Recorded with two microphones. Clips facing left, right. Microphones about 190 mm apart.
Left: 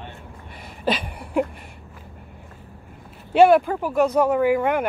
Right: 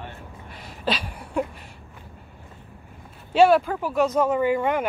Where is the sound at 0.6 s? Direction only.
55° left (ahead or behind).